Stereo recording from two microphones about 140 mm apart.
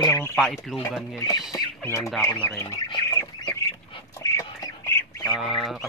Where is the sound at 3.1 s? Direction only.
25° left (ahead or behind).